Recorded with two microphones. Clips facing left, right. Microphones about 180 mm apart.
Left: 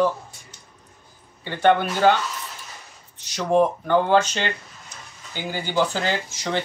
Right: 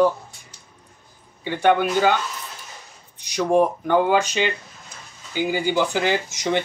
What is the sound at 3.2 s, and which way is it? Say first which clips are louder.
Speech: right 1 dB; 15° right (ahead or behind).